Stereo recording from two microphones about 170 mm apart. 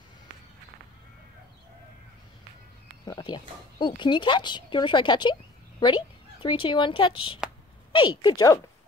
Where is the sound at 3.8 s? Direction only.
25° left (ahead or behind).